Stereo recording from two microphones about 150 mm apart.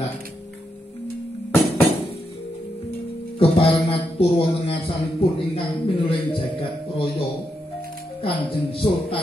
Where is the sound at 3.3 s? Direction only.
40° left (ahead or behind).